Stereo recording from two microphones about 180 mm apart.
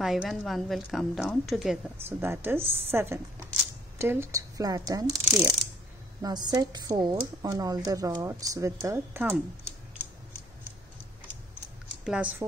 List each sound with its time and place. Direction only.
0.0 s a woman's voice: centre (ahead or behind)
2.0 s speech: 10° right (ahead or behind)
12.0 s speech: 5° right (ahead or behind)